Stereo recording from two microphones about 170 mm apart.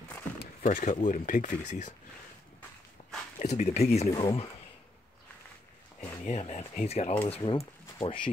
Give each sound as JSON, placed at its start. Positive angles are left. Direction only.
{"t": 0.6, "sound": "speech", "side_deg": 50}
{"t": 3.3, "sound": "speech", "side_deg": 45}
{"t": 4.1, "sound": "speech", "side_deg": 30}
{"t": 6.2, "sound": "speech", "side_deg": 40}